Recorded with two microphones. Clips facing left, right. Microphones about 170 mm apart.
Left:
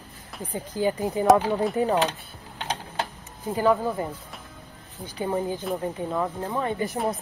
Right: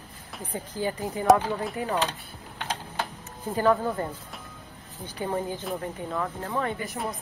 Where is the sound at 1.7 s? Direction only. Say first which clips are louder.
Left 7 dB; 30° left (ahead or behind).